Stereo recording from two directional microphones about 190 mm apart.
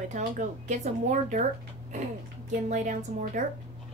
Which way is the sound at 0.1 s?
40° right (ahead or behind).